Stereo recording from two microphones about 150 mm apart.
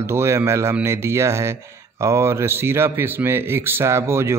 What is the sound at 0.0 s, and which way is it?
Speech, 20° right (ahead or behind).